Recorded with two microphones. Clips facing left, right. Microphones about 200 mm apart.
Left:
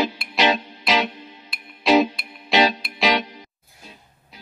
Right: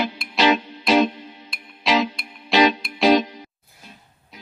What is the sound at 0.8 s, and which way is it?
Music, 90° left.